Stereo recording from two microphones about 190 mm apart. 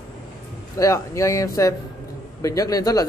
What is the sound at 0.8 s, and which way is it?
Speech, 15° left (ahead or behind).